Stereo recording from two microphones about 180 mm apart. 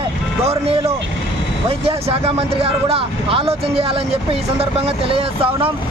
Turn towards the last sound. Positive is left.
turn(degrees=-30)  # may be behind; listen again after turning